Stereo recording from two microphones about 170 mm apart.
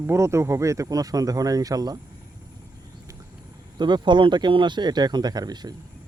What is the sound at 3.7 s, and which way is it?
Speech, 25° right (ahead or behind).